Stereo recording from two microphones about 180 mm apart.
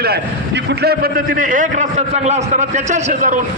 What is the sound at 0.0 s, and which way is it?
A man's voice, 70° right (ahead or behind).